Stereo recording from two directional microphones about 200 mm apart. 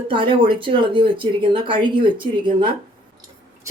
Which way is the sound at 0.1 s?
25° right (ahead or behind).